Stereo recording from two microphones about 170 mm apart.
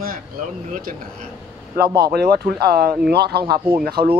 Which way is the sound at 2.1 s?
65° right (ahead or behind).